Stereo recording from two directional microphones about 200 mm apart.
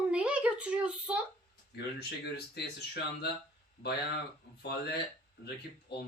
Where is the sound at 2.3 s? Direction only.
55° left (ahead or behind).